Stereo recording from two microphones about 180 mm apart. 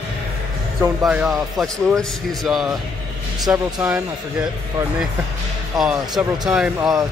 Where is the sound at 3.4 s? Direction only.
20° right (ahead or behind).